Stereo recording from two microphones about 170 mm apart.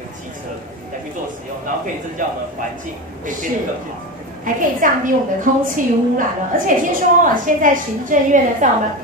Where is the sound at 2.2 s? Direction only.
50° right (ahead or behind).